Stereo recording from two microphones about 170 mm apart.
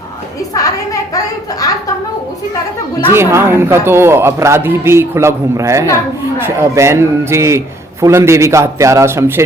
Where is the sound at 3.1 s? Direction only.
15° right (ahead or behind).